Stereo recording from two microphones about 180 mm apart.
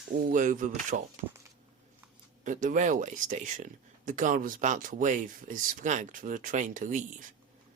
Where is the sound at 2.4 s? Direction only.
45° right (ahead or behind).